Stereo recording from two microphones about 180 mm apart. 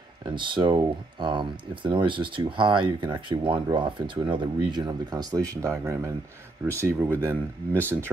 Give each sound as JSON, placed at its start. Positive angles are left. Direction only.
{"t": 0.2, "sound": "speech", "side_deg": -25}